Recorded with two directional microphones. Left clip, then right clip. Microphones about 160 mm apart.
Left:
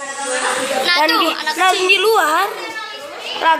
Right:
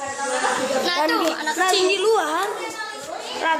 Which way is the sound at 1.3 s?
40° right (ahead or behind).